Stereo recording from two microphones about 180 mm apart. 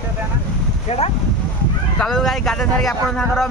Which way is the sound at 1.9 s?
Centre (ahead or behind).